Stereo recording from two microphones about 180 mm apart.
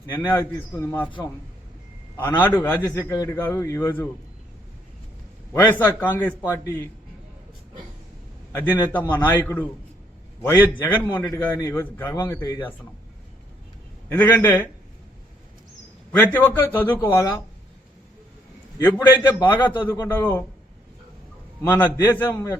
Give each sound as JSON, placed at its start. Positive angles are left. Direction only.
{"t": 0.3, "sound": "a man's voice", "side_deg": 10}
{"t": 2.4, "sound": "a man's voice", "side_deg": 10}
{"t": 5.5, "sound": "a man's voice", "side_deg": 10}
{"t": 8.9, "sound": "a man's voice", "side_deg": 10}
{"t": 14.1, "sound": "a man's voice", "side_deg": 10}
{"t": 16.1, "sound": "a man's voice", "side_deg": 10}
{"t": 18.8, "sound": "a man's voice", "side_deg": 10}
{"t": 21.6, "sound": "a man's voice", "side_deg": 10}